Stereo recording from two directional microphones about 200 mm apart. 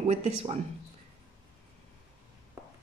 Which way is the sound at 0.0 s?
30° right (ahead or behind).